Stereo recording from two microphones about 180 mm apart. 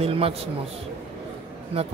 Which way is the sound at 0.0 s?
35° right (ahead or behind).